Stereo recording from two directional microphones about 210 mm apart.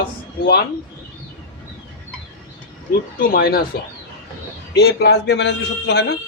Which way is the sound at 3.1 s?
45° left (ahead or behind).